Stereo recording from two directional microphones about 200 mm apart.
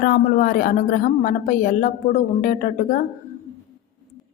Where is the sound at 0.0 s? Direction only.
45° left (ahead or behind).